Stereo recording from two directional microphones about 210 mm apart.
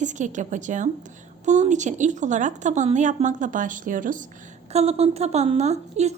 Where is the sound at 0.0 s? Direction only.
35° right (ahead or behind).